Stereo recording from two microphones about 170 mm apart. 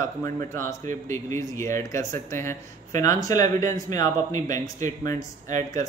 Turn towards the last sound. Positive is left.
turn(degrees=20)  # may be behind; listen again after turning